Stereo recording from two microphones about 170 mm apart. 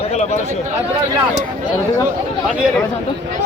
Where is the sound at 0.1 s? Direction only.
40° left (ahead or behind).